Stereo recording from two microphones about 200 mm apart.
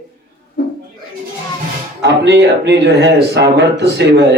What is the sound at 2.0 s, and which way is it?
Speech, 55° right (ahead or behind).